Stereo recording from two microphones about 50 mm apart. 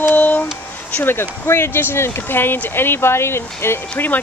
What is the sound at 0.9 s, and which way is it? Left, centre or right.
Speech, left.